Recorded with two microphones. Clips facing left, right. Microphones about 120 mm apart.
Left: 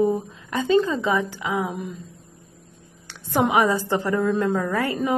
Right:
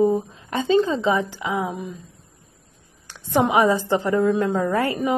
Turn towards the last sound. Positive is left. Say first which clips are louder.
# right 2 dB
turn(degrees=-15)  # may be behind; listen again after turning